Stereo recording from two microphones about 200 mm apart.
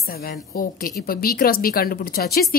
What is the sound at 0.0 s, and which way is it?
A woman's voice, 50° left (ahead or behind).